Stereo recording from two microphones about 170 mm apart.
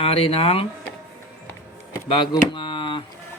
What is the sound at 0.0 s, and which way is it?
Speech, 35° left (ahead or behind).